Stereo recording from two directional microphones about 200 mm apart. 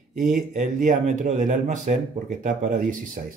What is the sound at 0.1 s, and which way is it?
A man's voice, 40° right (ahead or behind).